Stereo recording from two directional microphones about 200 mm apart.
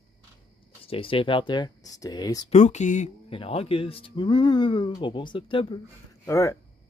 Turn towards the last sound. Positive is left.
turn(degrees=15)  # may be behind; listen again after turning